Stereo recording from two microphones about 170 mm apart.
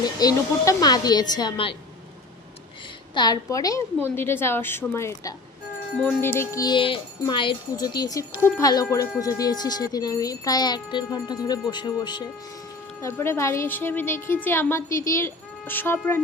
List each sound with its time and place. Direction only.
0.0 s speech: 20° left (ahead or behind)
3.2 s a woman's voice: 25° left (ahead or behind); by 6.3 s 5° left (ahead or behind)
6.4 s speech: 20° left (ahead or behind)
13.0 s a woman's voice: 15° left (ahead or behind)